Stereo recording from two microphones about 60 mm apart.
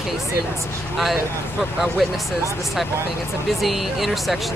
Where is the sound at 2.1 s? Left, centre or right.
Centre.